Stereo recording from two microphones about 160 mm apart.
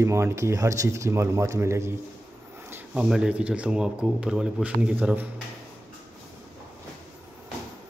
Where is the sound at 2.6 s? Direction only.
15° right (ahead or behind).